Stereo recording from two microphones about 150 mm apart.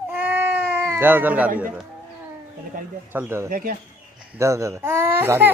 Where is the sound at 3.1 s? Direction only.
15° right (ahead or behind).